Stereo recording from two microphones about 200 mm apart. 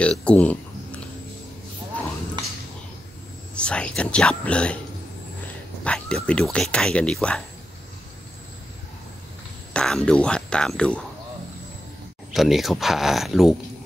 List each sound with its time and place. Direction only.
0.0 s a sound: 5° left (ahead or behind)
3.5 s speech: 5° left (ahead or behind)
5.9 s speech: 5° left (ahead or behind)
9.8 s speech: 5° left (ahead or behind)
12.4 s speech: centre (ahead or behind)